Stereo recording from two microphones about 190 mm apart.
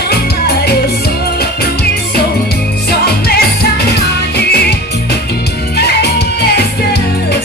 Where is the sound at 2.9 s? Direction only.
55° left (ahead or behind).